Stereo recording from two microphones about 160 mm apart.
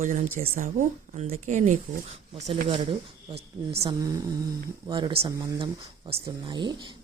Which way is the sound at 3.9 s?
20° right (ahead or behind).